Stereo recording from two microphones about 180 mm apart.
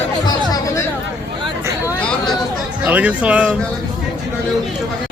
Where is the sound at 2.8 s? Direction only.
5° right (ahead or behind).